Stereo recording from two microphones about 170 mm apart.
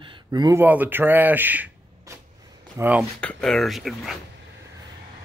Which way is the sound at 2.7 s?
10° right (ahead or behind).